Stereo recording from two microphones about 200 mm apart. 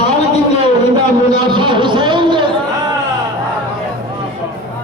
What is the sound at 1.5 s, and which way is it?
Speech, 25° right (ahead or behind).